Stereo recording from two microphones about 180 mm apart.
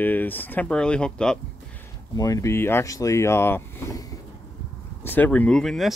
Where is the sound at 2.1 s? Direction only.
20° left (ahead or behind).